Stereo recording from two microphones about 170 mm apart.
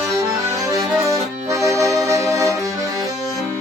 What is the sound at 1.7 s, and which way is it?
Music, 20° right (ahead or behind).